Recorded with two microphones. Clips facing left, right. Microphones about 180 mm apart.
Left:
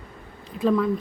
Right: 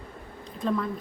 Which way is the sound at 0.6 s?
Centre (ahead or behind).